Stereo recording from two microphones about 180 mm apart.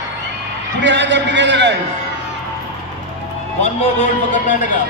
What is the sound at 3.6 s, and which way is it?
Speech, 45° left (ahead or behind).